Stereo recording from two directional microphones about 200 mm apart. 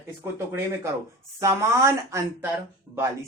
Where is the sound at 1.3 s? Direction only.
15° right (ahead or behind).